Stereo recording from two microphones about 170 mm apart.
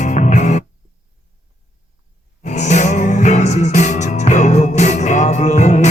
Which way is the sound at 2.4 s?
45° left (ahead or behind).